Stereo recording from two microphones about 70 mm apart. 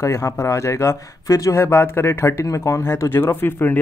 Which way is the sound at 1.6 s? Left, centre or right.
Left.